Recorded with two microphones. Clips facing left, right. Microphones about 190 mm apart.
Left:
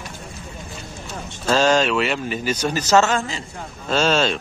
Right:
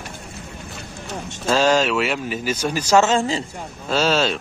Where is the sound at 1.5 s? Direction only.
10° right (ahead or behind).